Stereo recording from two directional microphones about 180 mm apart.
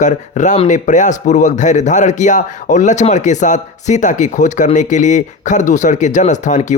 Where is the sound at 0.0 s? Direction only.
40° left (ahead or behind).